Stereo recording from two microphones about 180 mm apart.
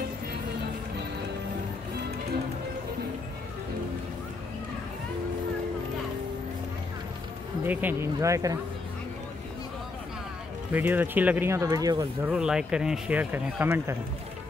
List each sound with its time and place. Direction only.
7.6 s speech: 10° right (ahead or behind)
10.7 s speech: 10° right (ahead or behind)
12.3 s speech: 5° right (ahead or behind)